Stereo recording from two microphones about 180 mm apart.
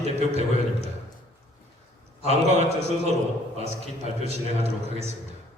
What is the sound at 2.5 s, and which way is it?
A man's voice, 35° right (ahead or behind).